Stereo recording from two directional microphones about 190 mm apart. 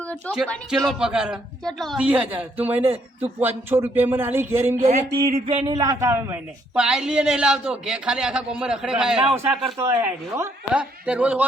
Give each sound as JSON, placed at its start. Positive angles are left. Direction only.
{"t": 0.4, "sound": "a man's voice", "side_deg": 5}
{"t": 4.8, "sound": "speech", "side_deg": -35}
{"t": 5.6, "sound": "a man's voice", "side_deg": -20}